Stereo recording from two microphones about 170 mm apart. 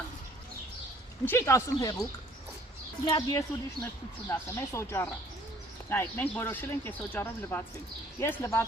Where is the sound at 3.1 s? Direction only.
20° left (ahead or behind).